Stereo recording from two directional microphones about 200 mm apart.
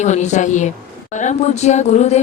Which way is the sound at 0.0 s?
35° left (ahead or behind).